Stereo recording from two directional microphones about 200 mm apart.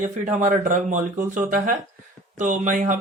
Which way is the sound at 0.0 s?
40° right (ahead or behind).